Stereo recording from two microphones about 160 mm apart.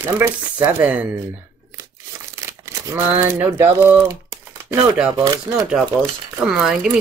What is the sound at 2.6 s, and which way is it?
Speech, 15° right (ahead or behind).